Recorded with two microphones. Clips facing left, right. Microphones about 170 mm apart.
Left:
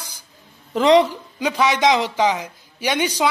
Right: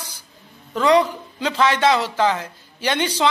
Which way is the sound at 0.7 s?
25° left (ahead or behind).